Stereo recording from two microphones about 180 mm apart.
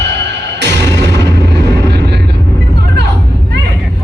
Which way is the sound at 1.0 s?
70° right (ahead or behind).